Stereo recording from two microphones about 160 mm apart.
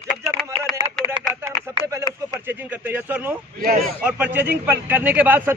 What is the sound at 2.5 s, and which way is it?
Speech, 10° right (ahead or behind).